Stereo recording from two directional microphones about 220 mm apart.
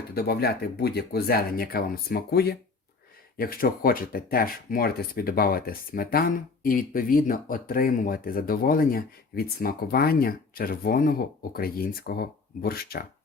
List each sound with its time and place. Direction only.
0.1 s speech: 45° left (ahead or behind)